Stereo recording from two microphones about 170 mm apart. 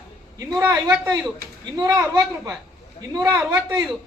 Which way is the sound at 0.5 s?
10° right (ahead or behind).